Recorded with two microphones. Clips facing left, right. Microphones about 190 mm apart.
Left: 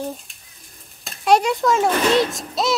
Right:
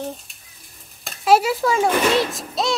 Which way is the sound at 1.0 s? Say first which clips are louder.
Even; 5° right (ahead or behind).